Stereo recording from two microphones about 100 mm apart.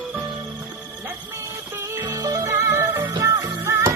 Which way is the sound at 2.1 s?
35° right (ahead or behind).